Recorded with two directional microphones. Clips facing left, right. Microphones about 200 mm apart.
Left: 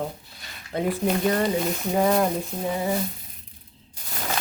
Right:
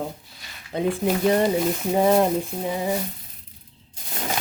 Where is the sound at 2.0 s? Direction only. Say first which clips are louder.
Right 3 dB; 25° right (ahead or behind).